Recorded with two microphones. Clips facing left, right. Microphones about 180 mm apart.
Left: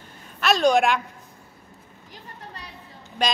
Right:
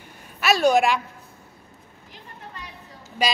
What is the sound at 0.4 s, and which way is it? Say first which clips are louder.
Speech: even; 5° right (ahead or behind).